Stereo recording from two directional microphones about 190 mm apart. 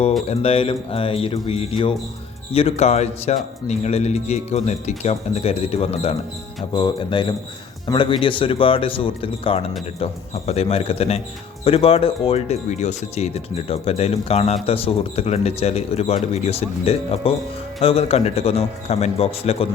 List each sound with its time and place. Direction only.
0.3 s speech: 30° left (ahead or behind)